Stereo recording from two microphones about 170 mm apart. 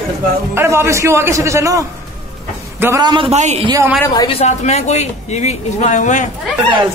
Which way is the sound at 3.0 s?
30° right (ahead or behind).